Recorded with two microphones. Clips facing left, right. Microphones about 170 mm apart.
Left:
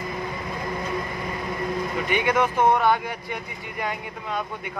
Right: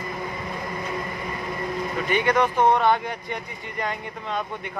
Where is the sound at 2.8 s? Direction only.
5° left (ahead or behind).